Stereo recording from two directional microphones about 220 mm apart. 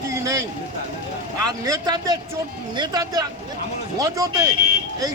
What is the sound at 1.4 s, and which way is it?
Speech, 15° right (ahead or behind).